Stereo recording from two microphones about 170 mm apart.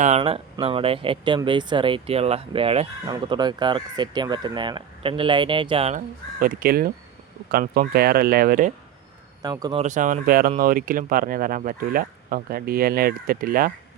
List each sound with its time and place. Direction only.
0.2 s speech: 30° right (ahead or behind)
6.4 s speech: 60° right (ahead or behind)
9.4 s speech: 25° right (ahead or behind)
9.8 s speech: 45° right (ahead or behind)